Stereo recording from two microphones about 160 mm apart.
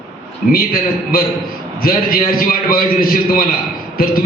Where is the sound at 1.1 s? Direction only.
65° left (ahead or behind).